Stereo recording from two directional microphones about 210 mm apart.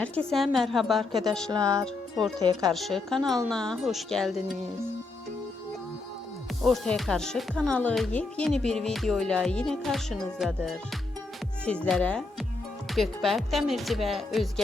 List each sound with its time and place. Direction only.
0.0 s a child's voice: 5° left (ahead or behind)
1.5 s speech: 15° right (ahead or behind)
1.8 s a child's voice: centre (ahead or behind)
2.4 s speech: 20° right (ahead or behind)
2.7 s a child's voice: centre (ahead or behind)
6.6 s a child's voice: centre (ahead or behind)